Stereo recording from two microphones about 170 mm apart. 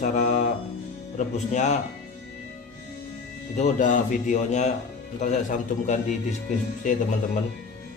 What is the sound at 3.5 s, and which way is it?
Speech, 45° left (ahead or behind).